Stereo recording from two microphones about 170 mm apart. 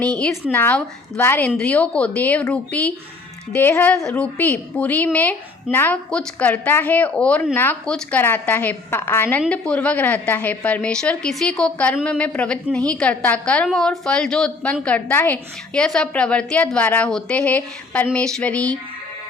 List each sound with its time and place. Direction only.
0.5 s a woman's voice: 10° left (ahead or behind)